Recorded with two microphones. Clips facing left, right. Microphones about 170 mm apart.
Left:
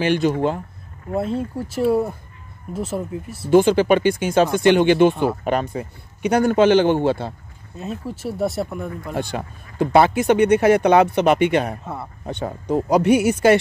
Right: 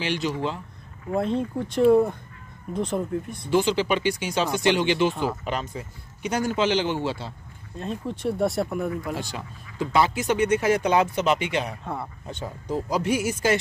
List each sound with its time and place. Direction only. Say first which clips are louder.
0.0 s speech: left 8 dB; 50° left (ahead or behind)
1.1 s speech: left 1 dB; 5° left (ahead or behind)
3.4 s speech: left 8 dB; 50° left (ahead or behind)
7.7 s speech: left 1 dB; 5° left (ahead or behind)
9.1 s speech: left 6 dB; 60° left (ahead or behind)
11.8 s speech: left 1 dB; 5° left (ahead or behind)
12.3 s speech: left 9 dB; 65° left (ahead or behind)